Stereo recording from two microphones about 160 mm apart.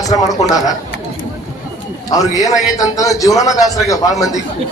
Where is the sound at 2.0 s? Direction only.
20° left (ahead or behind).